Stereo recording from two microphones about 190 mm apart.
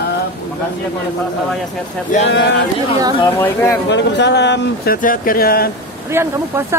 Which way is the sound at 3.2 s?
15° left (ahead or behind).